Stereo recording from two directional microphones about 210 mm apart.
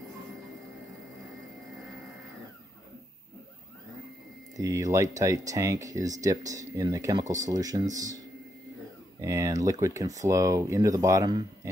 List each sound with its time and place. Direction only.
4.6 s speech: 15° right (ahead or behind)
9.2 s speech: 15° right (ahead or behind)